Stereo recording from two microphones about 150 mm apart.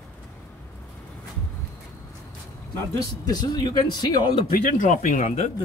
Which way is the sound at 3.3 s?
25° left (ahead or behind).